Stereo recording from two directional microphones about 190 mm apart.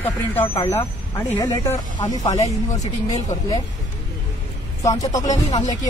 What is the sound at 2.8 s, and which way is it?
Speech, 35° left (ahead or behind).